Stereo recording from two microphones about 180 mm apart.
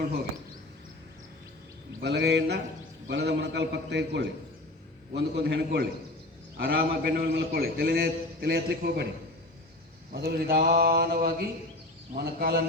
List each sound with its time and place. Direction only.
2.0 s a man's voice: 70° right (ahead or behind)
10.2 s a man's voice: 60° right (ahead or behind)